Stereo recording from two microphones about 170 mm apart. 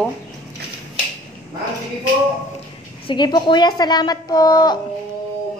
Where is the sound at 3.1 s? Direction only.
25° left (ahead or behind).